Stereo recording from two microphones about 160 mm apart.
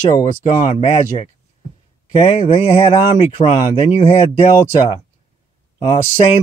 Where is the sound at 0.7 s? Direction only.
40° left (ahead or behind).